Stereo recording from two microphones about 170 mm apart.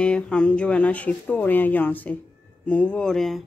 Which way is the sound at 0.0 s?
5° left (ahead or behind).